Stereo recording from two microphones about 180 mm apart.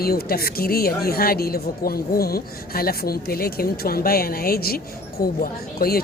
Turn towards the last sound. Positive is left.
turn(degrees=55)  # may be behind; listen again after turning